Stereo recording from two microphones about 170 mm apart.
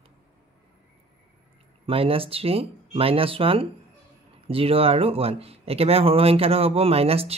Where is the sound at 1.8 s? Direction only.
35° right (ahead or behind).